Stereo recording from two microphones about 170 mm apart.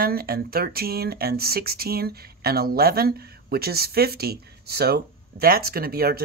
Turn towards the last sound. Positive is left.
turn(degrees=-65)  # may be behind; listen again after turning